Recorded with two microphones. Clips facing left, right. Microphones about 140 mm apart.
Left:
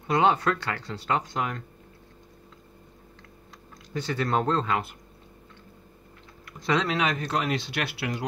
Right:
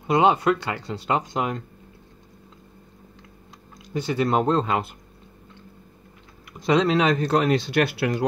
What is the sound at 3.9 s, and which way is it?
Speech, 15° right (ahead or behind).